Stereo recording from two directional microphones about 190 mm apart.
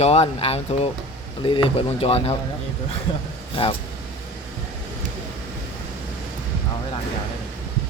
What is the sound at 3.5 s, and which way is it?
Speech, 30° left (ahead or behind).